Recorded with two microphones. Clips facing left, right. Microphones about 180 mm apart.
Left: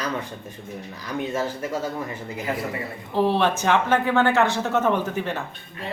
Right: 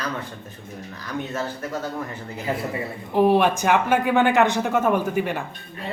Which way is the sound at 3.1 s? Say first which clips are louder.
Right 3 dB; 15° right (ahead or behind).